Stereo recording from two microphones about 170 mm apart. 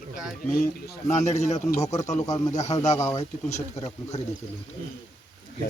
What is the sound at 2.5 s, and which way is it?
Speech, 45° left (ahead or behind).